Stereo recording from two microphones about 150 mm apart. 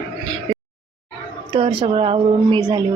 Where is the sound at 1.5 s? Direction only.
35° right (ahead or behind).